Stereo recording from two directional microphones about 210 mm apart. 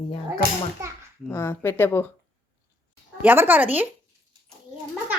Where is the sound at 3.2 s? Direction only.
10° right (ahead or behind).